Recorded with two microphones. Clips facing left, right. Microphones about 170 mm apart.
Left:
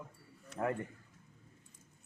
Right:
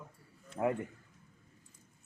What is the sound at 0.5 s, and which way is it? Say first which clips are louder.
Speech: right 3 dB; 15° right (ahead or behind).